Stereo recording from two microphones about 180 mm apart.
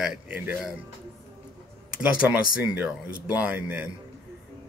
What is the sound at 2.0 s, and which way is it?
A man's voice, 5° right (ahead or behind).